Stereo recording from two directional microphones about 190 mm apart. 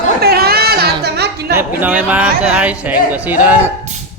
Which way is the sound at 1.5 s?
10° right (ahead or behind).